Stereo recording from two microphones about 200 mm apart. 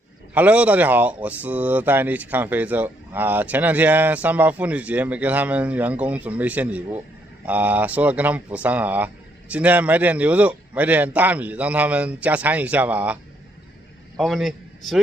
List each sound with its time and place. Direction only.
0.3 s a man's voice: 5° right (ahead or behind)